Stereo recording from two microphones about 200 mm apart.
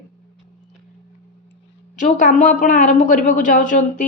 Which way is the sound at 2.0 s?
40° left (ahead or behind).